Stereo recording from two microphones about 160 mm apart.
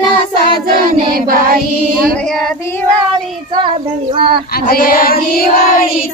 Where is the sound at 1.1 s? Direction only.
65° right (ahead or behind).